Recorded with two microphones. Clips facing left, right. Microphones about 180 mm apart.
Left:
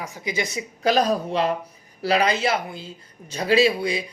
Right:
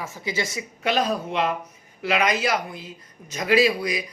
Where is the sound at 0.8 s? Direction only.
40° left (ahead or behind).